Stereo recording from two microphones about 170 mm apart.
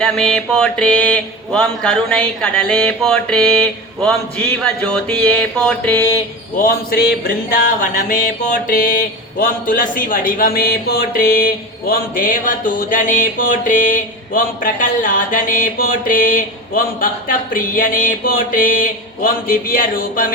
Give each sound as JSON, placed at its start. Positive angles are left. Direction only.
{"t": 0.0, "sound": "mantra", "side_deg": 5}
{"t": 6.6, "sound": "speech", "side_deg": 60}
{"t": 8.6, "sound": "speech", "side_deg": 55}